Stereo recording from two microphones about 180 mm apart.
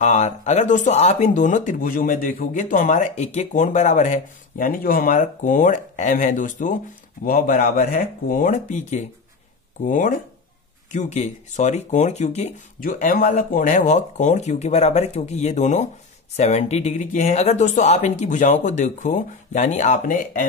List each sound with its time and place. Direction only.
0.0 s speech: 40° left (ahead or behind)